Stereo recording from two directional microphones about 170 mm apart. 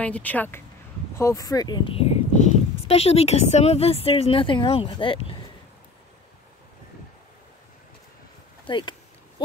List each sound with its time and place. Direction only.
0.0 s speech: 10° left (ahead or behind); by 5.4 s 30° left (ahead or behind)
8.6 s speech: 25° left (ahead or behind)